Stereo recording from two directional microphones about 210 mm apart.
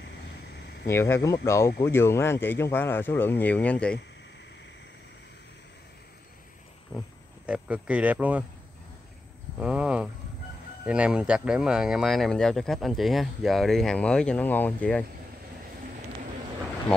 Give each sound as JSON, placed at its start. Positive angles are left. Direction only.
{"t": 0.6, "sound": "a sound", "side_deg": 55}
{"t": 0.8, "sound": "speech", "side_deg": 10}
{"t": 7.4, "sound": "speech", "side_deg": -5}
{"t": 9.6, "sound": "speech", "side_deg": -5}